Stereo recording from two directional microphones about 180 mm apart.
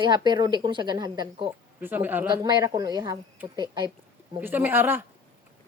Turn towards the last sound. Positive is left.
turn(degrees=-10)  # may be behind; listen again after turning